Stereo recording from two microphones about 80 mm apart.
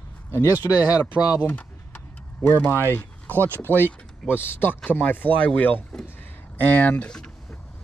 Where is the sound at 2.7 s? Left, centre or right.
Right.